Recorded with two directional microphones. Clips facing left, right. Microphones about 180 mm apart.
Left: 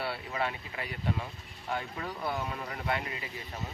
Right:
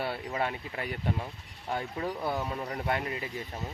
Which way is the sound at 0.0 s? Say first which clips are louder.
Right 2 dB; 45° right (ahead or behind).